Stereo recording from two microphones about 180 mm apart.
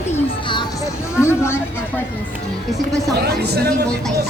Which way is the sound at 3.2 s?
65° right (ahead or behind).